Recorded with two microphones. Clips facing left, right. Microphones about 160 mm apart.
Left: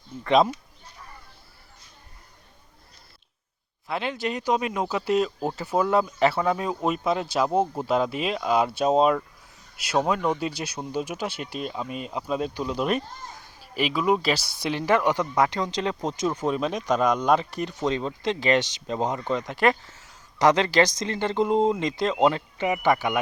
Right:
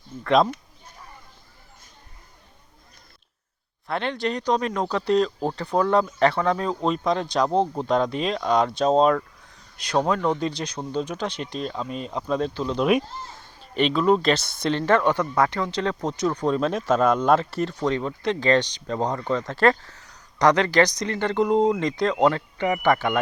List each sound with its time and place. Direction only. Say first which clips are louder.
0.3 s speech: right 1 dB; centre (ahead or behind)
3.8 s speech: right 2 dB; 5° left (ahead or behind); by 16.5 s 20° left (ahead or behind)
16.5 s speech: right 4 dB; 5° left (ahead or behind)
17.6 s speech: right 2 dB; 15° left (ahead or behind)